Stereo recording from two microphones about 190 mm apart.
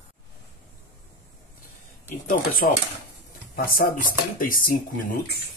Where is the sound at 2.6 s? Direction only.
55° left (ahead or behind).